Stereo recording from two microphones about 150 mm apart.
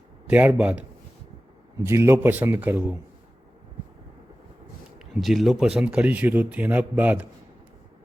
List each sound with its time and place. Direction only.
0.3 s speech: 10° right (ahead or behind)
4.9 s speech: centre (ahead or behind)